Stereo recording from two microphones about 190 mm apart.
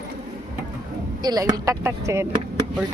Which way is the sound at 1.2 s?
20° right (ahead or behind).